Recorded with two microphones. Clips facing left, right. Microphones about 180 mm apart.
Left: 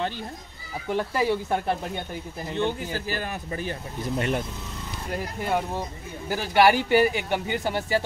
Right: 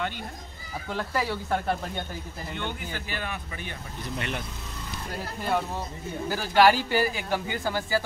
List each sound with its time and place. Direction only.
0.8 s speech: 20° left (ahead or behind)
2.5 s speech: 35° left (ahead or behind)
5.2 s speech: 15° left (ahead or behind)